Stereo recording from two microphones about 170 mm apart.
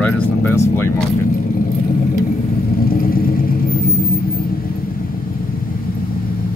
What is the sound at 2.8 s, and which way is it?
Vehicle, 60° left (ahead or behind).